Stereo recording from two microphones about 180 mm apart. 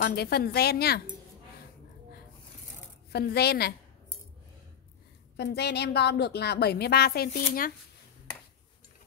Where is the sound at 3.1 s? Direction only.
65° left (ahead or behind).